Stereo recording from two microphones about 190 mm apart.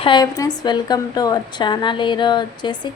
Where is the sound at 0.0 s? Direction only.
20° left (ahead or behind).